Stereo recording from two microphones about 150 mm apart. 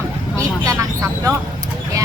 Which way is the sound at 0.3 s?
20° right (ahead or behind).